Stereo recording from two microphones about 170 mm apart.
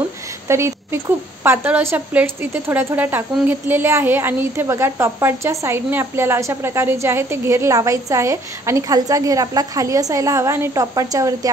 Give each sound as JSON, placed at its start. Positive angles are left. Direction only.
{"t": 0.5, "sound": "a woman's voice", "side_deg": -15}